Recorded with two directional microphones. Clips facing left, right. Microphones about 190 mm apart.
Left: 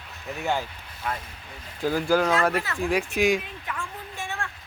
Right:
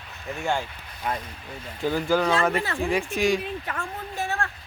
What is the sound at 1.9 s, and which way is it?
Speech, 5° left (ahead or behind).